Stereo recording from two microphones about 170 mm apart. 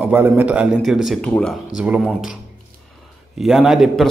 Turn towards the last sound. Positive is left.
turn(degrees=0)  # may be behind; listen again after turning